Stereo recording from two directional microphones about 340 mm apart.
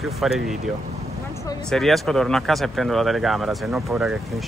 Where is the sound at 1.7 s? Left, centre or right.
Centre.